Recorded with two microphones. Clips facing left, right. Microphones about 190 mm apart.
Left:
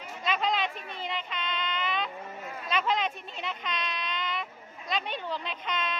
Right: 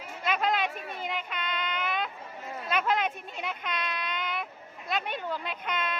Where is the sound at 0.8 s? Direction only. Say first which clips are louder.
Right 2 dB; 50° right (ahead or behind).